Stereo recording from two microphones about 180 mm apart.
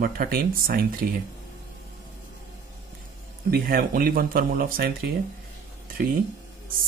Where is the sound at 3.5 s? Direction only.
55° right (ahead or behind).